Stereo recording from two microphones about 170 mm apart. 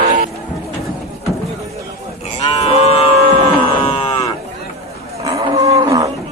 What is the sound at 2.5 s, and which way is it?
Livestock, 40° left (ahead or behind).